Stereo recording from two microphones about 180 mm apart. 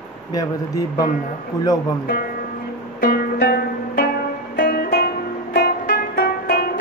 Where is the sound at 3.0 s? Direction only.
55° left (ahead or behind).